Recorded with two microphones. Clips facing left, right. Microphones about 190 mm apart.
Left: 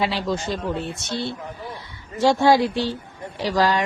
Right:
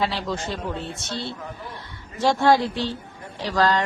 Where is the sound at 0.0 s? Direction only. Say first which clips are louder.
Left 2 dB; 15° left (ahead or behind).